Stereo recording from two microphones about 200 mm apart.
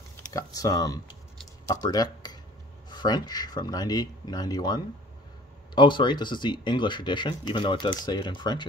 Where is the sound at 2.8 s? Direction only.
20° left (ahead or behind).